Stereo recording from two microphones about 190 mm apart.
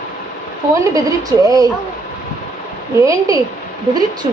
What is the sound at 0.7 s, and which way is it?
Speech, 15° right (ahead or behind).